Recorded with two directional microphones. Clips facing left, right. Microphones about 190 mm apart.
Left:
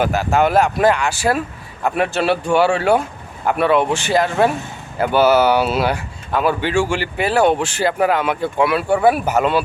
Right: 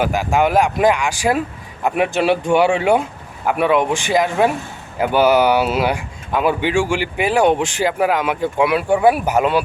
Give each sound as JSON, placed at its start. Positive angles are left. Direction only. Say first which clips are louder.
{"t": 0.0, "sound": "speech", "louder": "even", "side_deg": -10}